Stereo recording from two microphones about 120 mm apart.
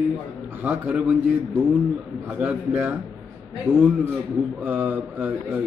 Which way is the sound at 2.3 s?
15° right (ahead or behind).